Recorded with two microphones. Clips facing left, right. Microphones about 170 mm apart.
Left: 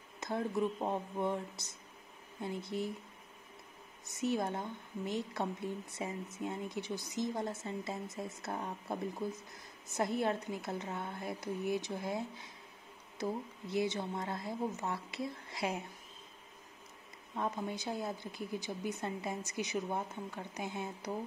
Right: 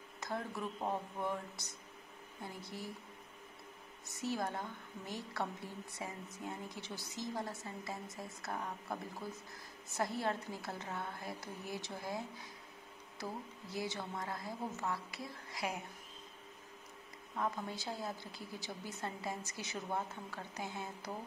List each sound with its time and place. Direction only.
0.2 s a woman's voice: 20° left (ahead or behind)
4.1 s a woman's voice: 20° left (ahead or behind)
9.9 s a woman's voice: 20° left (ahead or behind)
17.4 s a woman's voice: 20° left (ahead or behind)